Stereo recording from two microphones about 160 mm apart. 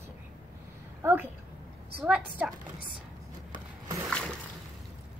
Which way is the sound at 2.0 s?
5° right (ahead or behind).